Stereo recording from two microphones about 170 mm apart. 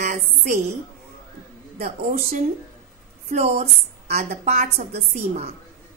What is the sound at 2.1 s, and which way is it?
A woman's voice, 55° right (ahead or behind).